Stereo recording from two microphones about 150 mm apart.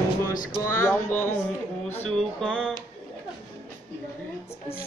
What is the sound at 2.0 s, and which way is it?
Music, centre (ahead or behind).